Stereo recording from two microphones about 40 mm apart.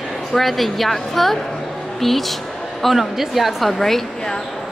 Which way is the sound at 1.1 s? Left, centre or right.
Centre.